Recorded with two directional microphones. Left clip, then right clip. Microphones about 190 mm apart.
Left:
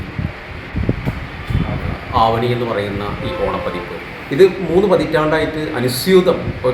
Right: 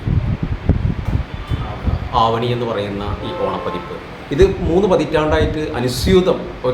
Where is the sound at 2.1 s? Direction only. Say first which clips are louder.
Left 1 dB; 5° right (ahead or behind).